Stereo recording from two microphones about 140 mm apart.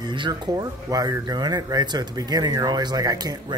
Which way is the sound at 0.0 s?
30° right (ahead or behind).